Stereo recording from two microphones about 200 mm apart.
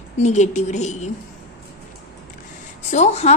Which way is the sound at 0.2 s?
35° left (ahead or behind).